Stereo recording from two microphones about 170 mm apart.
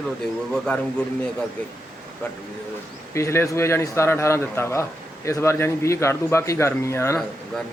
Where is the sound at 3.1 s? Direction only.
15° left (ahead or behind).